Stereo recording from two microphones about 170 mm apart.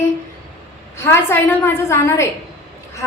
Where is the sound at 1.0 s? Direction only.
15° left (ahead or behind).